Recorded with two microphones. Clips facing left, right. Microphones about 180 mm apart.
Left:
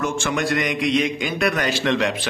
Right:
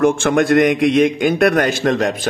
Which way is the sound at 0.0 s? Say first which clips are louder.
Right 9 dB; 55° right (ahead or behind).